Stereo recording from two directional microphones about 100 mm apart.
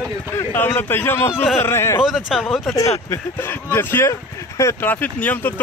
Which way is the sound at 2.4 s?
5° left (ahead or behind).